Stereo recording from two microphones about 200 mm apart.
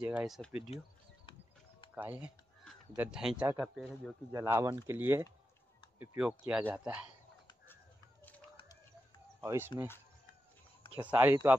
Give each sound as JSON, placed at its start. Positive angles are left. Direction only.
{"t": 0.0, "sound": "speech", "side_deg": -5}
{"t": 2.0, "sound": "speech", "side_deg": -10}
{"t": 4.3, "sound": "speech", "side_deg": -15}
{"t": 7.6, "sound": "a sound", "side_deg": 10}
{"t": 9.4, "sound": "speech", "side_deg": -10}
{"t": 11.1, "sound": "speech", "side_deg": -10}